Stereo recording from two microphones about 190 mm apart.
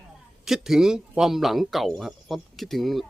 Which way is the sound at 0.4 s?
Centre (ahead or behind).